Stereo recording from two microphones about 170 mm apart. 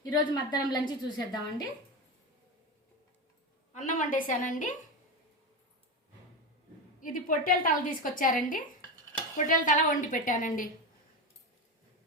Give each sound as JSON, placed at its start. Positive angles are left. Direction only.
{"t": 0.1, "sound": "a woman's voice", "side_deg": 25}
{"t": 3.8, "sound": "a woman's voice", "side_deg": 50}
{"t": 7.0, "sound": "a woman's voice", "side_deg": 55}